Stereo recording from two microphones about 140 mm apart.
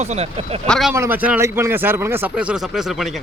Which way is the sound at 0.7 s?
Centre (ahead or behind).